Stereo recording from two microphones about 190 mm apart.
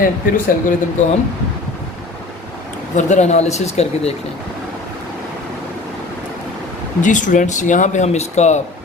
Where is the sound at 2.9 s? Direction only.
40° left (ahead or behind).